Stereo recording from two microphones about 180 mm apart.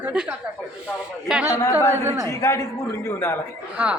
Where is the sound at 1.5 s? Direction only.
20° left (ahead or behind).